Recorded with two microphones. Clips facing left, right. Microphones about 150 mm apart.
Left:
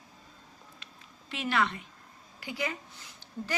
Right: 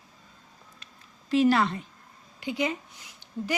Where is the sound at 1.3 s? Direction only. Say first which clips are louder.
Right 8 dB; 35° right (ahead or behind).